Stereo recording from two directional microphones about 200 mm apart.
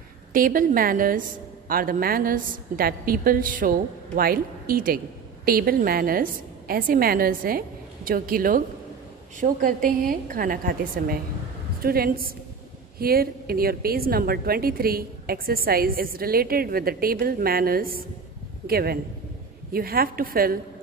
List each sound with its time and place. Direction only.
0.3 s a woman's voice: 45° right (ahead or behind)